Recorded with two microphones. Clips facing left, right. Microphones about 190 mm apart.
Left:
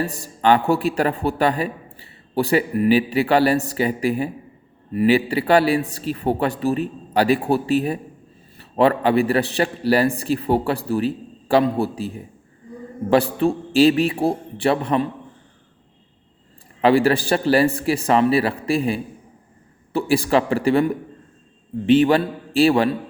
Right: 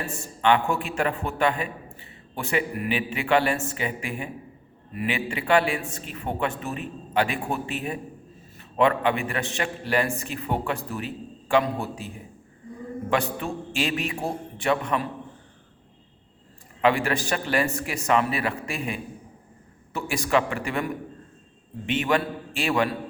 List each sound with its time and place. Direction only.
0.0 s a man's voice: 35° left (ahead or behind)
16.8 s a man's voice: 35° left (ahead or behind)
21.8 s a man's voice: 35° left (ahead or behind)